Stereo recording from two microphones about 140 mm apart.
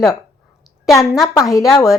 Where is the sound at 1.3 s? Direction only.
25° left (ahead or behind).